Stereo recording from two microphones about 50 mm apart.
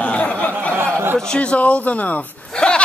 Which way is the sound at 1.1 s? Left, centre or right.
Centre.